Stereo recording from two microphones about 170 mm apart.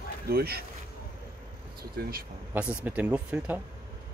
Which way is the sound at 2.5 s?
10° right (ahead or behind).